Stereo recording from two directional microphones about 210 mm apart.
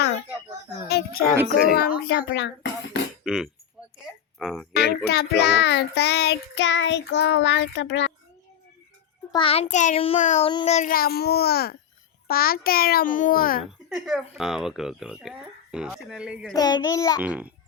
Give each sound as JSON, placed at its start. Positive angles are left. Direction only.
{"t": 0.9, "sound": "child singing", "side_deg": 50}
{"t": 3.2, "sound": "speech", "side_deg": 0}
{"t": 3.8, "sound": "a sound", "side_deg": -5}
{"t": 4.4, "sound": "speech", "side_deg": 0}
{"t": 4.7, "sound": "child singing", "side_deg": 50}
{"t": 9.3, "sound": "a child's voice", "side_deg": 25}
{"t": 10.5, "sound": "a child's voice", "side_deg": 20}
{"t": 10.8, "sound": "child singing", "side_deg": 40}
{"t": 13.7, "sound": "speech", "side_deg": 0}
{"t": 16.6, "sound": "a child's voice", "side_deg": 20}
{"t": 17.2, "sound": "a child's voice", "side_deg": -5}